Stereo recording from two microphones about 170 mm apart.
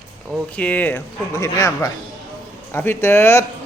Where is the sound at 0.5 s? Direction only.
10° left (ahead or behind).